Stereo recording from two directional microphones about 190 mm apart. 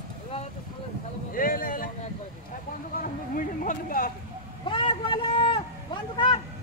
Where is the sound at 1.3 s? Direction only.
45° left (ahead or behind).